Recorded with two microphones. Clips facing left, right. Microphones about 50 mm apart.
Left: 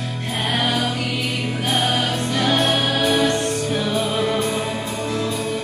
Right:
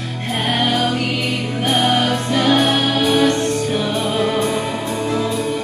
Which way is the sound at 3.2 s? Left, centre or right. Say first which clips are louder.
Right 3 dB; right.